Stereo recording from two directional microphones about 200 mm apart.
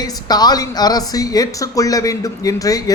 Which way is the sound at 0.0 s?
20° left (ahead or behind).